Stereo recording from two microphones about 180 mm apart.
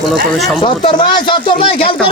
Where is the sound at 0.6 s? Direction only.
30° left (ahead or behind).